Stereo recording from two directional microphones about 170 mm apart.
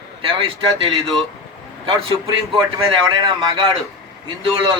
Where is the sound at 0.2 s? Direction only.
30° right (ahead or behind).